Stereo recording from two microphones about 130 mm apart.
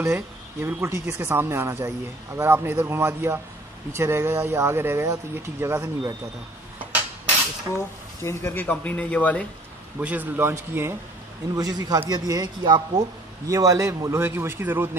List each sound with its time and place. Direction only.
0.0 s speech: 20° right (ahead or behind)
8.2 s speech: 20° left (ahead or behind)
9.9 s speech: 10° right (ahead or behind)
11.5 s speech: 30° right (ahead or behind)